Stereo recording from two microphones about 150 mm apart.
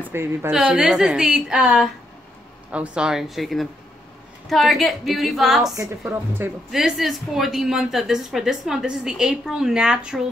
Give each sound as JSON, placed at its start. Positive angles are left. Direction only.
{"t": 0.1, "sound": "speech", "side_deg": -15}
{"t": 0.5, "sound": "a woman's voice", "side_deg": -5}
{"t": 6.0, "sound": "speech", "side_deg": -15}
{"t": 6.7, "sound": "a woman's voice", "side_deg": 0}